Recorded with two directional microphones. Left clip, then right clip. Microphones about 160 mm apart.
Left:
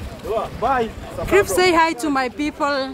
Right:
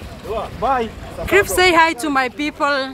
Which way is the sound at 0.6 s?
55° right (ahead or behind).